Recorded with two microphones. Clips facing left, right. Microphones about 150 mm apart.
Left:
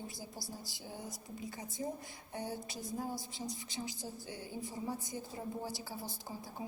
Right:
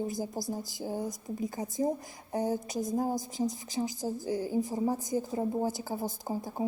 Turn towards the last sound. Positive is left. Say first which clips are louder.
# right 10 dB
turn(degrees=-45)  # may be behind; listen again after turning